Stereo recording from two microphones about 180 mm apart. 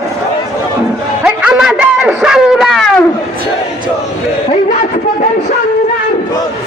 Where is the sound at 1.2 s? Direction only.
5° right (ahead or behind).